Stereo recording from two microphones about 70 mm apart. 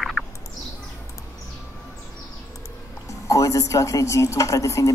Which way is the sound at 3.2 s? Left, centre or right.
Left.